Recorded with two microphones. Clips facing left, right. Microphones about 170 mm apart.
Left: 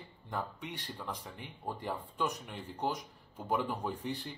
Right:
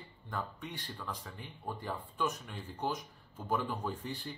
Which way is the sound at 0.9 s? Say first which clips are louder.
Left 1 dB; 20° left (ahead or behind).